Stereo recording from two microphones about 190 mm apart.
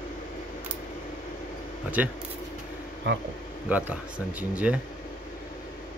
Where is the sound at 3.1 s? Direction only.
70° right (ahead or behind).